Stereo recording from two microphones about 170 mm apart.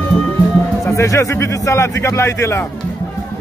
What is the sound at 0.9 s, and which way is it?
Speech, 15° left (ahead or behind).